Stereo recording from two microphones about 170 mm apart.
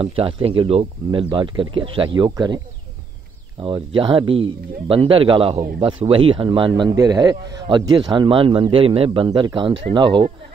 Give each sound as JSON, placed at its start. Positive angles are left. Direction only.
{"t": 0.0, "sound": "a man's voice", "side_deg": -35}